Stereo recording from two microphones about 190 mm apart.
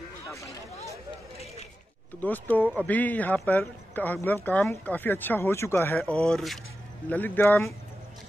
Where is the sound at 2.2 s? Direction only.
10° left (ahead or behind).